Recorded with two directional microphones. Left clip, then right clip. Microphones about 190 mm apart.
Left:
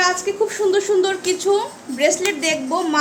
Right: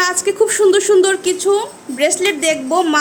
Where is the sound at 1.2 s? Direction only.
25° right (ahead or behind).